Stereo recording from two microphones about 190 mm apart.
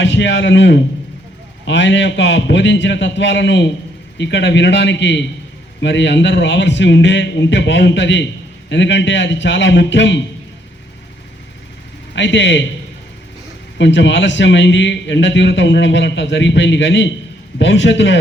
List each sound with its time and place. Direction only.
0.0 s a man's voice: 70° left (ahead or behind)
12.1 s a man's voice: 70° left (ahead or behind)
13.7 s a man's voice: 70° left (ahead or behind)